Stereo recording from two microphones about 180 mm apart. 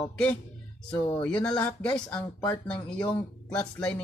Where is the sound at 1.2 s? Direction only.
5° left (ahead or behind).